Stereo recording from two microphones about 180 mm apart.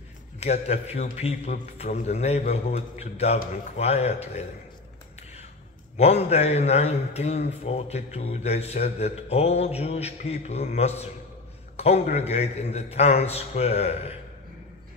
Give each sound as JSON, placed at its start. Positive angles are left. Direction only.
{"t": 0.4, "sound": "a man's voice", "side_deg": 35}
{"t": 5.9, "sound": "a man's voice", "side_deg": 35}